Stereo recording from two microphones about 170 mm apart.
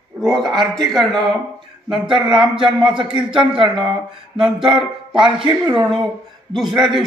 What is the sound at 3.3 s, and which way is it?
Speech, 30° right (ahead or behind).